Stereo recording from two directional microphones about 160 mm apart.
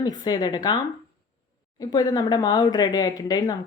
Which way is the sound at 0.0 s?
25° left (ahead or behind).